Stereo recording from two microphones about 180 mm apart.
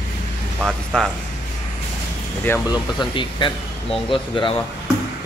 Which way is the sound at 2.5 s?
10° left (ahead or behind).